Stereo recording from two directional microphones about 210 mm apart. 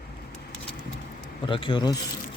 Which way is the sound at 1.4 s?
25° left (ahead or behind).